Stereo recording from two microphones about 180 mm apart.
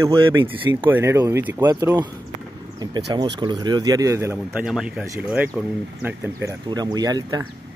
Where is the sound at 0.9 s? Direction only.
15° right (ahead or behind).